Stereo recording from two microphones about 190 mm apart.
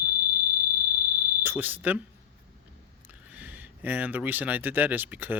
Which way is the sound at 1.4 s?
10° right (ahead or behind).